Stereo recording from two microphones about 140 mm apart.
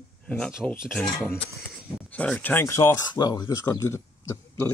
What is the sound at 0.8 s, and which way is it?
Speech, 5° right (ahead or behind).